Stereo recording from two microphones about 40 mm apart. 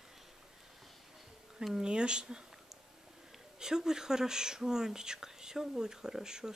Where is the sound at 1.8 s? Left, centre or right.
Right.